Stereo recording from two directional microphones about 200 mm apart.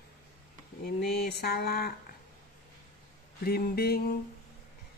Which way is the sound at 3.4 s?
50° left (ahead or behind).